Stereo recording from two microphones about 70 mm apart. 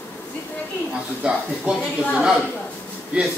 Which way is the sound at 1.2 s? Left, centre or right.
Centre.